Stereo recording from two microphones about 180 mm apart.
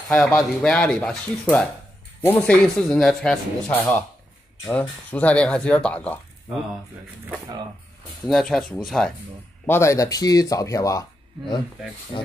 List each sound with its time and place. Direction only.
0.4 s speech: 5° left (ahead or behind)
8.3 s speech: centre (ahead or behind)
9.7 s speech: 15° left (ahead or behind)